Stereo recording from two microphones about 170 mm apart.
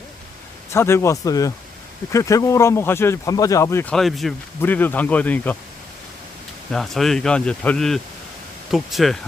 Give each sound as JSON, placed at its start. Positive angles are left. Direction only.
{"t": 0.7, "sound": "speech", "side_deg": 15}
{"t": 3.9, "sound": "speech", "side_deg": 0}
{"t": 4.6, "sound": "speech", "side_deg": 10}
{"t": 6.7, "sound": "speech", "side_deg": 0}